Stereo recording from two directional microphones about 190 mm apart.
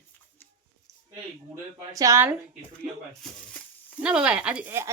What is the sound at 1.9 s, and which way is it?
Speech, 15° right (ahead or behind).